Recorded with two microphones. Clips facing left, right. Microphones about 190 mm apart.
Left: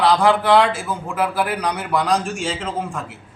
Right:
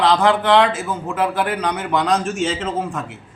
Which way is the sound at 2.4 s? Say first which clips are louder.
Right 3 dB; 5° right (ahead or behind).